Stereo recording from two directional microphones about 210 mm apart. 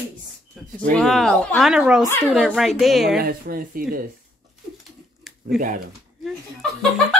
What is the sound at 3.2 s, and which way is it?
Speech, 45° right (ahead or behind).